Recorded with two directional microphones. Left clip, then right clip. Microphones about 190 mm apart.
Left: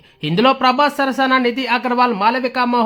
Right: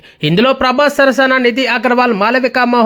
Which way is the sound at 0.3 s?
30° right (ahead or behind).